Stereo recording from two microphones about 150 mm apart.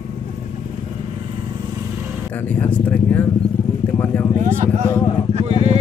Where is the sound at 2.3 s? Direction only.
10° left (ahead or behind).